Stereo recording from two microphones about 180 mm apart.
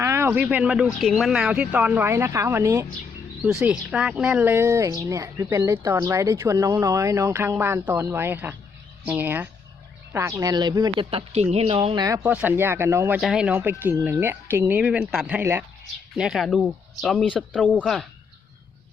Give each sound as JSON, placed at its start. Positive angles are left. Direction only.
{"t": 0.0, "sound": "speech", "side_deg": -15}